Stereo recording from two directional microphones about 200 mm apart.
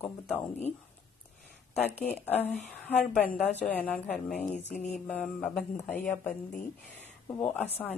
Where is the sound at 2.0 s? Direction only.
10° left (ahead or behind).